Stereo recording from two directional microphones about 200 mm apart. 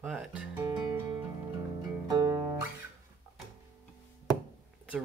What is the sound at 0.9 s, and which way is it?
Music, 20° right (ahead or behind).